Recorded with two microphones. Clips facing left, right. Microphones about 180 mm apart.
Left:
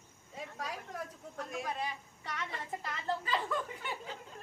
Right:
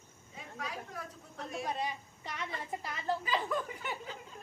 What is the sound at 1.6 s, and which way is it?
A woman's voice, 20° right (ahead or behind).